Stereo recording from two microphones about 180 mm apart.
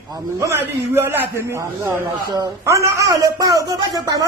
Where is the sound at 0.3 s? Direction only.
15° right (ahead or behind).